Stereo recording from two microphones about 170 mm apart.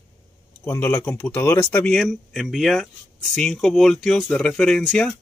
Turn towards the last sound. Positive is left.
turn(degrees=5)  # may be behind; listen again after turning